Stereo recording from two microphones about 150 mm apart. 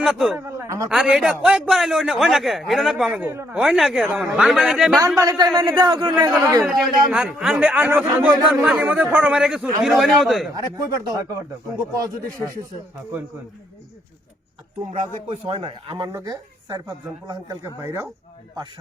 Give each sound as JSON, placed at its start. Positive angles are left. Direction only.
{"t": 0.0, "sound": "speech", "side_deg": -5}
{"t": 0.3, "sound": "a man's voice", "side_deg": -15}
{"t": 0.9, "sound": "a man's voice", "side_deg": -5}
{"t": 3.2, "sound": "speech", "side_deg": -15}
{"t": 3.6, "sound": "a man's voice", "side_deg": 0}
{"t": 4.9, "sound": "speech", "side_deg": -20}
{"t": 6.7, "sound": "a man's voice", "side_deg": -5}
{"t": 10.5, "sound": "speech", "side_deg": -25}
{"t": 15.3, "sound": "speech", "side_deg": -35}
{"t": 16.1, "sound": "a woman's voice", "side_deg": -25}